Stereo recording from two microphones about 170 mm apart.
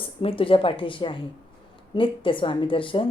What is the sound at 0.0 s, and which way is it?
Speech, 35° left (ahead or behind).